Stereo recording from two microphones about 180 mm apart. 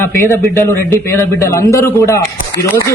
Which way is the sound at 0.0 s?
15° left (ahead or behind).